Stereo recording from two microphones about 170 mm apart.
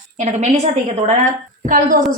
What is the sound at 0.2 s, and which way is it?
Speech, 40° right (ahead or behind).